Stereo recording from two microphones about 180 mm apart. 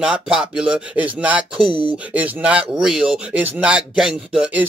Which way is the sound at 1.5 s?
30° right (ahead or behind).